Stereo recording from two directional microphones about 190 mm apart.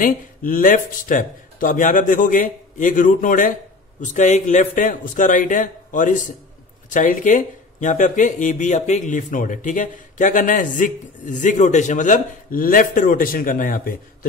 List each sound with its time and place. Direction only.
0.0 s speech: 45° left (ahead or behind)